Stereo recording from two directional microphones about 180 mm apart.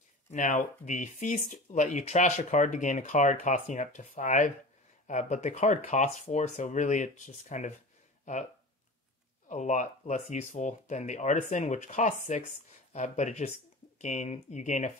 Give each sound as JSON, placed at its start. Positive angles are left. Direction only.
{"t": 0.3, "sound": "speech", "side_deg": 45}
{"t": 9.5, "sound": "speech", "side_deg": 45}